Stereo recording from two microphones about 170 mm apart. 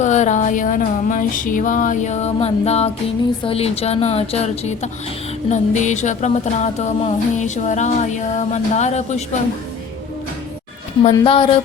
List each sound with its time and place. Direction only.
0.0 s music: 45° left (ahead or behind)
3.4 s a woman's voice: 35° left (ahead or behind)
5.5 s music: 45° left (ahead or behind)
11.1 s a woman's voice: 30° left (ahead or behind)